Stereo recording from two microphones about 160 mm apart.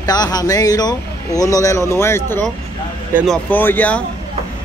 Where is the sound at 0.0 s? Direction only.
25° left (ahead or behind).